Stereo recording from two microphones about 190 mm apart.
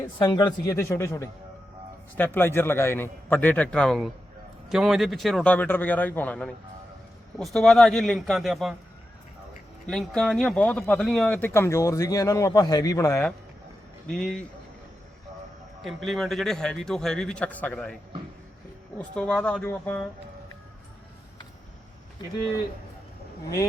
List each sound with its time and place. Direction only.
0.2 s a man's voice: 20° left (ahead or behind); by 8.7 s centre (ahead or behind)
9.8 s speech: centre (ahead or behind)
14.1 s a man's voice: 5° left (ahead or behind)
15.8 s a man's voice: centre (ahead or behind)
18.9 s speech: 5° left (ahead or behind)